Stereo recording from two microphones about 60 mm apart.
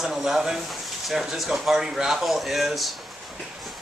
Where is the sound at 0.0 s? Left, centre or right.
Centre.